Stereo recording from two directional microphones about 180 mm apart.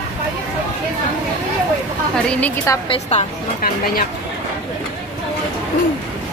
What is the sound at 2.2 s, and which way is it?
Speech, 10° left (ahead or behind).